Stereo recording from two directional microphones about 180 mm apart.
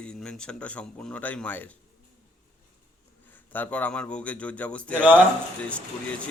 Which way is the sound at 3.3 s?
10° left (ahead or behind).